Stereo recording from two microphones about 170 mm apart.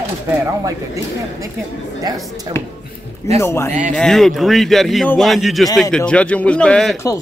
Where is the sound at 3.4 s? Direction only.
15° left (ahead or behind).